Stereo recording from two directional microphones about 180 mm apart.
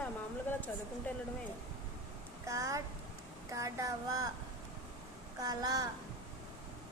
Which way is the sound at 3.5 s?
15° right (ahead or behind).